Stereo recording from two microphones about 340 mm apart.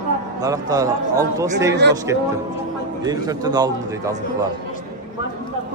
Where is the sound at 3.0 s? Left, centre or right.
Centre.